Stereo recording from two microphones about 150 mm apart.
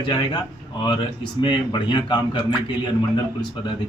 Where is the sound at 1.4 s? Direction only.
35° left (ahead or behind).